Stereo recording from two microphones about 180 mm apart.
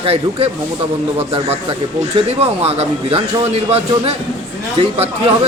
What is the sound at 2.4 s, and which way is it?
A man's voice, 35° right (ahead or behind).